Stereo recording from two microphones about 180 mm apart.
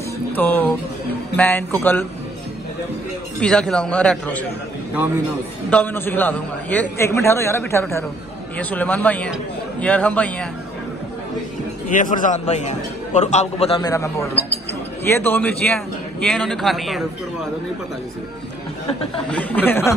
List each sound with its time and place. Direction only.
0.4 s a man's voice: 10° left (ahead or behind)
3.3 s speech: 5° left (ahead or behind)
5.7 s a man's voice: 10° left (ahead or behind)
11.9 s a man's voice: 45° left (ahead or behind)
13.7 s a man's voice: 20° left (ahead or behind); by 17.0 s centre (ahead or behind)
19.2 s a man's voice: 10° left (ahead or behind)